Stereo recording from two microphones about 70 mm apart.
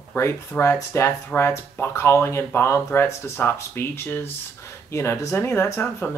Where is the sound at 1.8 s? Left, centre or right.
Left.